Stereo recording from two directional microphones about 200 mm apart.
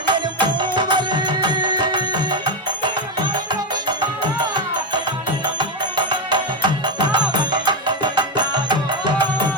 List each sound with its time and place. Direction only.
0.0 s music: 25° right (ahead or behind)